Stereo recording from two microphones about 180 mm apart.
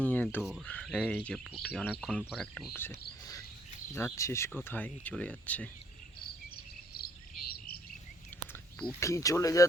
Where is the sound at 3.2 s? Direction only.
20° left (ahead or behind).